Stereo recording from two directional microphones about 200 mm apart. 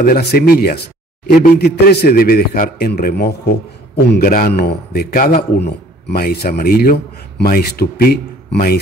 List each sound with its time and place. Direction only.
0.0 s a man's voice: 50° left (ahead or behind)